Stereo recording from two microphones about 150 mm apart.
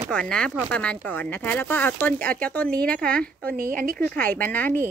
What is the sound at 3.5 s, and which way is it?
Speech, 65° right (ahead or behind).